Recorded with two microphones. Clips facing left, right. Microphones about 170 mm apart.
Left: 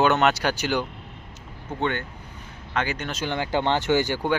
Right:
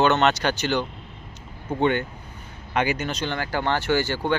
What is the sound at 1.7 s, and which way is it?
Speech, 10° right (ahead or behind).